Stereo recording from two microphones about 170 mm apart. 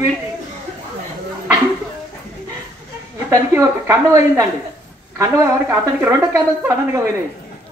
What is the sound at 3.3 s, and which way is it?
A woman's voice, 15° right (ahead or behind).